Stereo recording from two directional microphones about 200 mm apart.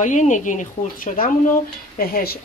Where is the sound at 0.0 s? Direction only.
40° left (ahead or behind).